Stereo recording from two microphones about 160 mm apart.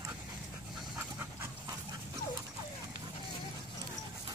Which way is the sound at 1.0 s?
15° right (ahead or behind).